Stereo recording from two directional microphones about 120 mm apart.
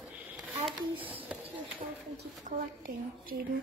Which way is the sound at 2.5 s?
90° right.